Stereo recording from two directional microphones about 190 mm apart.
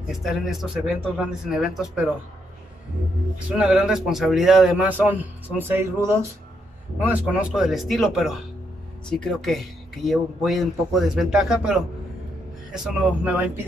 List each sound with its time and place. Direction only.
0.0 s a man's voice: centre (ahead or behind)
3.4 s a man's voice: 5° right (ahead or behind)
12.7 s a man's voice: 5° right (ahead or behind)